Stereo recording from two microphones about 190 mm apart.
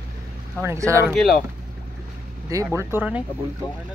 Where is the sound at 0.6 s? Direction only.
15° right (ahead or behind).